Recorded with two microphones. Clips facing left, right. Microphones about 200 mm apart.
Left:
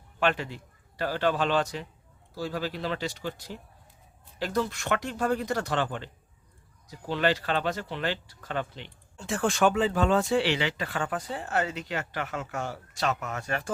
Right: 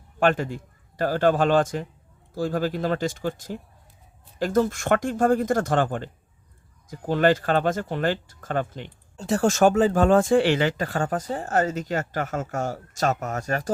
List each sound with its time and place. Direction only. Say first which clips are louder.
0.2 s a man's voice: right 6 dB; 45° right (ahead or behind)